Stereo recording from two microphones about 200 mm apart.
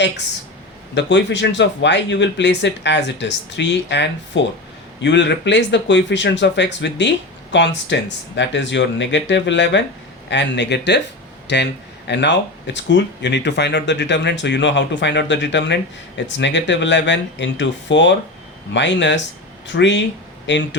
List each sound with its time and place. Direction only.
0.9 s speech: 60° left (ahead or behind)